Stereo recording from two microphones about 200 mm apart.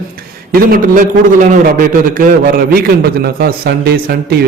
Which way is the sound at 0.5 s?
45° right (ahead or behind).